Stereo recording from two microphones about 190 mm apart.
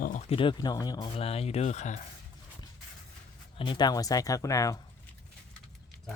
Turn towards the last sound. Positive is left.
turn(degrees=15)  # may be behind; listen again after turning